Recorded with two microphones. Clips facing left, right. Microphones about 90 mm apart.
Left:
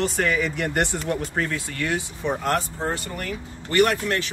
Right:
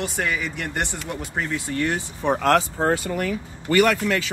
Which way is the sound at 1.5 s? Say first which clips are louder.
Right 2 dB; 30° right (ahead or behind).